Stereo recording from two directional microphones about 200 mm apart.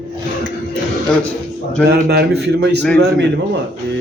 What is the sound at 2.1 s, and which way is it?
Speech, 55° right (ahead or behind).